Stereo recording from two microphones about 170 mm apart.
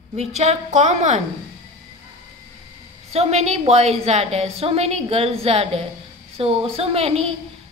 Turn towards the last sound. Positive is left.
turn(degrees=-35)  # may be behind; listen again after turning